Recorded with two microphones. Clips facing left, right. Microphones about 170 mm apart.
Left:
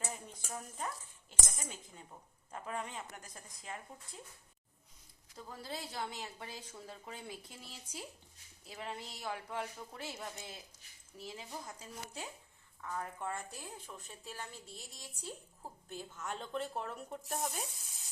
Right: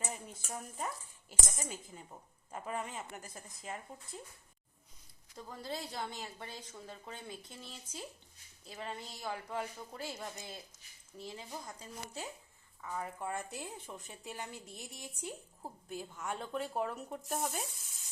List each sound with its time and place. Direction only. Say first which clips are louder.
0.0 s speech: right 1 dB; 5° right (ahead or behind)
5.4 s a woman's voice: right 2 dB; 5° left (ahead or behind)
13.6 s a woman's voice: right 3 dB; 20° right (ahead or behind); by 17.6 s centre (ahead or behind)